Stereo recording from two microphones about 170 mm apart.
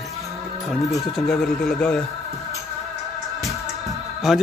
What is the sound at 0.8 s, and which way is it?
Speech, centre (ahead or behind).